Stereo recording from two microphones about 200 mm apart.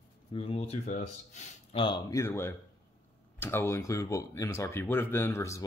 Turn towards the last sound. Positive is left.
turn(degrees=15)  # may be behind; listen again after turning